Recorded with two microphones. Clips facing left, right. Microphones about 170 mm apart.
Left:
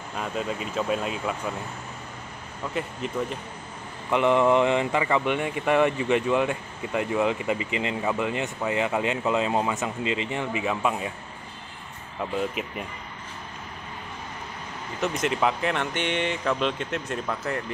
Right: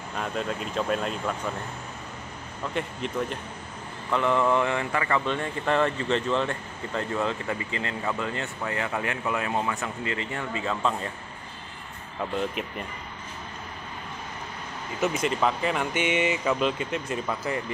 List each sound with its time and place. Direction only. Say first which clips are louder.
0.1 s speech: even; 5° left (ahead or behind)
2.7 s speech: even; centre (ahead or behind)
4.1 s speech: left 3 dB; 20° left (ahead or behind)
12.2 s speech: left 1 dB; centre (ahead or behind)
15.0 s speech: even; centre (ahead or behind)